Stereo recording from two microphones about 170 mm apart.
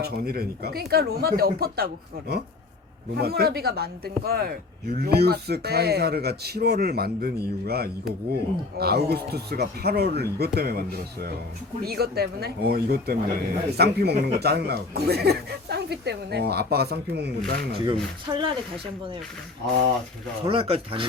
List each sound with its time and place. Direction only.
0.0 s speech: 65° right (ahead or behind)
18.3 s speech: 20° right (ahead or behind)
20.5 s speech: 35° right (ahead or behind)